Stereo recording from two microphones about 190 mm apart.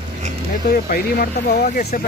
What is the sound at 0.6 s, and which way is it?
Speech, 50° left (ahead or behind).